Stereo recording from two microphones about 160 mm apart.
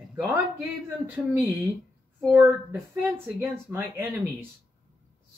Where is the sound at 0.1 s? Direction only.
15° right (ahead or behind).